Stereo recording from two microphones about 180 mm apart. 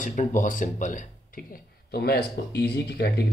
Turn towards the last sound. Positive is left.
turn(degrees=65)  # may be behind; listen again after turning